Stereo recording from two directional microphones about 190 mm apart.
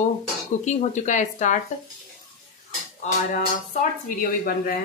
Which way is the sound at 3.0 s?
40° left (ahead or behind).